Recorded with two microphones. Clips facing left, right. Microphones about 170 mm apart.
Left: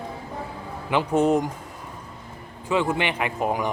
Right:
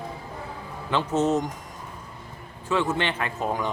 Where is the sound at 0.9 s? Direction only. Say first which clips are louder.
Left 3 dB; 15° left (ahead or behind).